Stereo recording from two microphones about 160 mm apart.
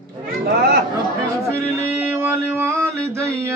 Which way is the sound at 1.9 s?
10° right (ahead or behind).